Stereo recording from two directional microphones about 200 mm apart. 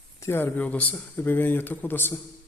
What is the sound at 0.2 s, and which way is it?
Speech, 10° left (ahead or behind).